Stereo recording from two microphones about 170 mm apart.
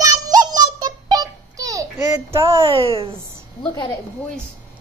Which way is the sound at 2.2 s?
30° right (ahead or behind).